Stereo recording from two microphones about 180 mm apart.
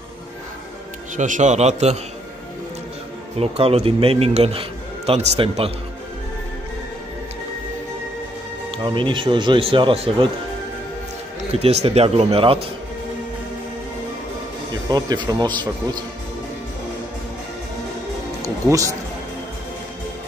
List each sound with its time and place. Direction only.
1.1 s speech: 45° right (ahead or behind)
3.3 s speech: 35° right (ahead or behind)
8.7 s speech: 25° right (ahead or behind)
11.6 s speech: 35° right (ahead or behind)
14.9 s speech: 25° right (ahead or behind)
18.4 s music: 15° right (ahead or behind)